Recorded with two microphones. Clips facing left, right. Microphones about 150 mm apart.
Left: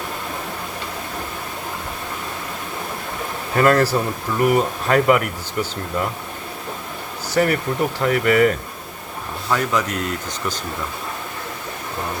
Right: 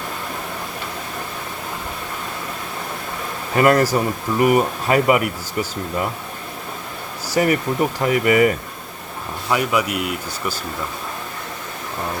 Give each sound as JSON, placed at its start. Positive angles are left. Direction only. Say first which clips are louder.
{"t": 3.6, "sound": "speech", "louder": "right 1 dB", "side_deg": -10}
{"t": 7.3, "sound": "a sound", "louder": "even", "side_deg": -10}
{"t": 8.0, "sound": "speech", "louder": "even", "side_deg": -10}